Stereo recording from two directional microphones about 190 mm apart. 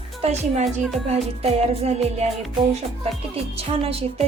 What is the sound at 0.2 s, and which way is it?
A woman's voice, 35° right (ahead or behind).